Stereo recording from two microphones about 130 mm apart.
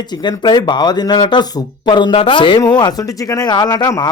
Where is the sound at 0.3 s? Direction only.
35° left (ahead or behind).